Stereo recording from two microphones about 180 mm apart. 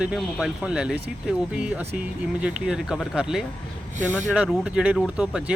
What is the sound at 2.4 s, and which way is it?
Speech, 5° right (ahead or behind).